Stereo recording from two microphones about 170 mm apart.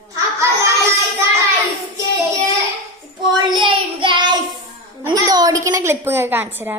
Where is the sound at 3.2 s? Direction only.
25° right (ahead or behind).